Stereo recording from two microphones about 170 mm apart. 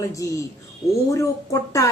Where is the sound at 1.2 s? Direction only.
20° left (ahead or behind).